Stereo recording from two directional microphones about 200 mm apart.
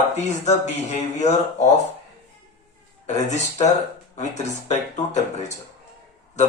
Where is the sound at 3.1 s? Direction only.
35° left (ahead or behind).